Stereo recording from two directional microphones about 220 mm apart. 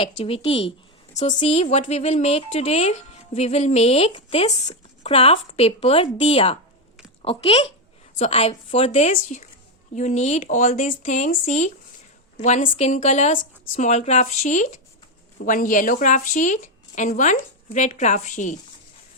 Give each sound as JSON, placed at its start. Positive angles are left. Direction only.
{"t": 0.0, "sound": "a woman's voice", "side_deg": 25}